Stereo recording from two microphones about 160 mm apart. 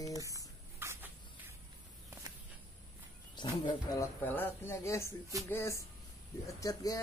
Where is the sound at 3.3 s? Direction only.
30° left (ahead or behind).